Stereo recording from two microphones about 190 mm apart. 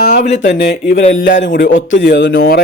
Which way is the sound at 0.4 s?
55° left (ahead or behind).